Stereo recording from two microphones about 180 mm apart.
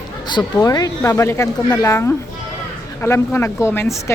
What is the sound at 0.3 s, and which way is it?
Speech, 25° left (ahead or behind).